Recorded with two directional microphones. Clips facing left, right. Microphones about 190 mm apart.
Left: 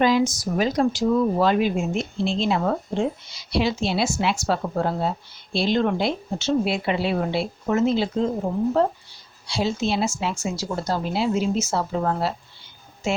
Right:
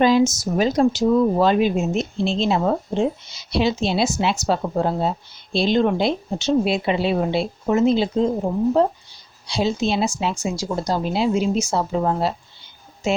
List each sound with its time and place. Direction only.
0.0 s a woman's voice: 30° right (ahead or behind)
9.5 s a woman's voice: 20° right (ahead or behind)